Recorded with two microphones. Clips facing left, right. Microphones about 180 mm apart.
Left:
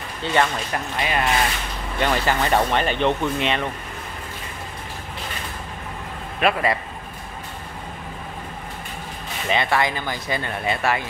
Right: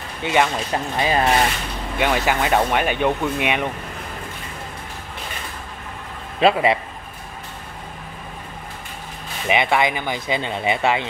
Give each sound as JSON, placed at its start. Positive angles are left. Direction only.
{"t": 0.2, "sound": "speech", "side_deg": -15}
{"t": 0.9, "sound": "speech", "side_deg": -30}
{"t": 2.0, "sound": "speech", "side_deg": -10}
{"t": 6.4, "sound": "speech", "side_deg": -20}
{"t": 9.5, "sound": "speech", "side_deg": -15}